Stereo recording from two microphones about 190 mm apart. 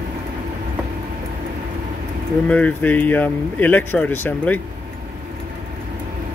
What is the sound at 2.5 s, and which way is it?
Speech, 5° left (ahead or behind).